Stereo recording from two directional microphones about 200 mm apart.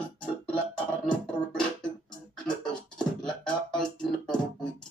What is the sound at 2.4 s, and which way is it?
Beatboxing, 20° left (ahead or behind).